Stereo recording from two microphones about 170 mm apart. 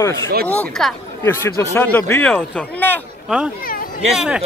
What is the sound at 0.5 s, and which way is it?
Speech, 5° left (ahead or behind).